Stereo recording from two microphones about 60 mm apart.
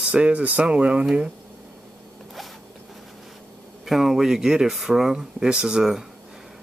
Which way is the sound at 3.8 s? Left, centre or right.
Centre.